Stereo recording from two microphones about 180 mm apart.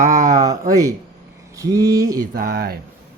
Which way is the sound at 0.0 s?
45° right (ahead or behind).